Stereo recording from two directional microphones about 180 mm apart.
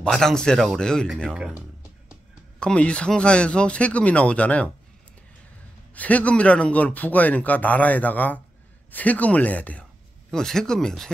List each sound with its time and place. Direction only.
0.0 s speech: 5° left (ahead or behind)
2.6 s speech: 5° left (ahead or behind)
5.9 s speech: 10° left (ahead or behind)